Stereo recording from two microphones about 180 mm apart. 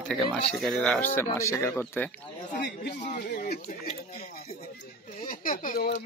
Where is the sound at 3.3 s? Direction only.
65° left (ahead or behind).